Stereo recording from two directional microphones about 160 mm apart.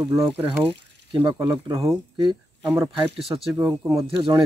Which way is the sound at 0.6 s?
30° right (ahead or behind).